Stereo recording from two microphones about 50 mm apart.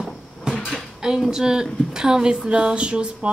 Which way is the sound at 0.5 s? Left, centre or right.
Centre.